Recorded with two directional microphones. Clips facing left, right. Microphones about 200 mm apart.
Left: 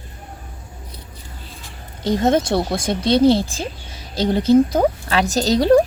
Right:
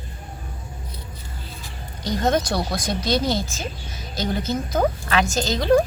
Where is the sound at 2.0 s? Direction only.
25° left (ahead or behind).